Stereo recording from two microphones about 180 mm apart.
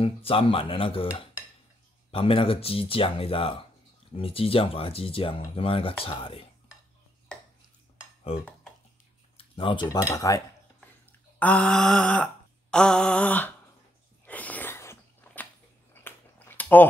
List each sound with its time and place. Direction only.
0.0 s speech: 30° left (ahead or behind)
2.0 s speech: 30° left (ahead or behind)
9.4 s speech: 30° left (ahead or behind)
9.9 s cutlery: 20° left (ahead or behind)
11.1 s speech: 10° left (ahead or behind)
12.7 s a sound: 5° left (ahead or behind)